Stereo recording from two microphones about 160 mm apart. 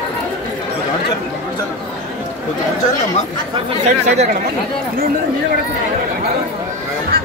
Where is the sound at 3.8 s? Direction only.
45° right (ahead or behind).